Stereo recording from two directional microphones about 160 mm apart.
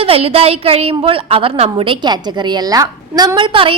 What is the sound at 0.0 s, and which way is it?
A woman's voice, 35° right (ahead or behind).